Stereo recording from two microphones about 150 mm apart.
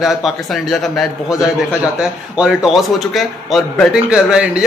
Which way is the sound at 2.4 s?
Centre (ahead or behind).